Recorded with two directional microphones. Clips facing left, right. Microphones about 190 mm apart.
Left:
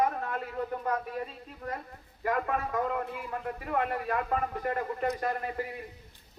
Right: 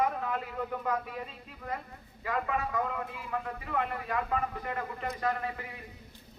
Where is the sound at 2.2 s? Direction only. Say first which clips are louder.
Left 2 dB; 50° left (ahead or behind).